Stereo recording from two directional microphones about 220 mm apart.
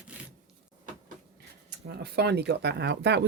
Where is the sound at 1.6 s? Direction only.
50° right (ahead or behind).